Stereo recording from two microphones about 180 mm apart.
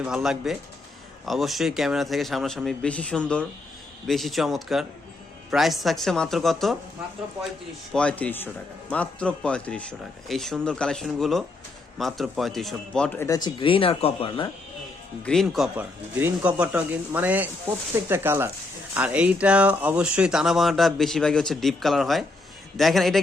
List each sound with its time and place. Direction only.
0.0 s speech: 5° right (ahead or behind)
7.9 s speech: 5° left (ahead or behind)
13.1 s speech: 20° left (ahead or behind)
15.2 s speech: 5° left (ahead or behind)